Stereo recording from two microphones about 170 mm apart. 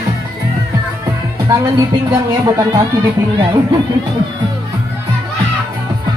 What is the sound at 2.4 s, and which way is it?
Speech, 20° right (ahead or behind).